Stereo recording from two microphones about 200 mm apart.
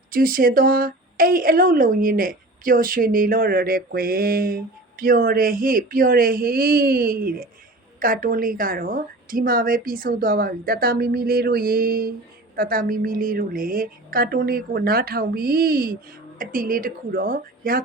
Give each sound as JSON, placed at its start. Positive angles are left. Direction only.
{"t": 0.1, "sound": "a woman's voice", "side_deg": -45}